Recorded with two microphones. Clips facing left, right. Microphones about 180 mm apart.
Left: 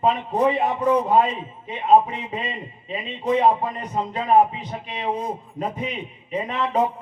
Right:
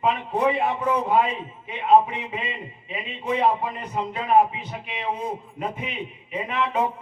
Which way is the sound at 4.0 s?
35° left (ahead or behind).